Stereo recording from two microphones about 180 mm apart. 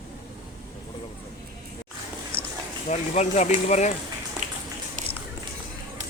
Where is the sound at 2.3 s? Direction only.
15° right (ahead or behind).